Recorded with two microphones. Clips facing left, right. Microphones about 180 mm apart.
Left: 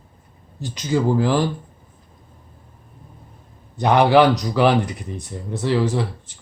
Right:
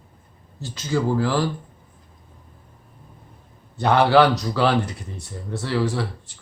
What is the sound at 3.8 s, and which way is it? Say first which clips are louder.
Speech: left 2 dB; 15° left (ahead or behind).